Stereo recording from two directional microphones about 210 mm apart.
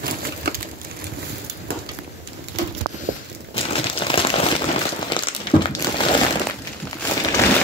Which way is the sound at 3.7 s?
25° left (ahead or behind).